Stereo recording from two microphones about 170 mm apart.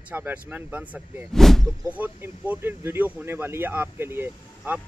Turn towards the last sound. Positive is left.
turn(degrees=-15)  # may be behind; listen again after turning